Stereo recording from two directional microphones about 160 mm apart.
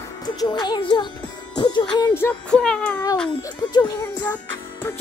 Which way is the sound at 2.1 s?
10° left (ahead or behind).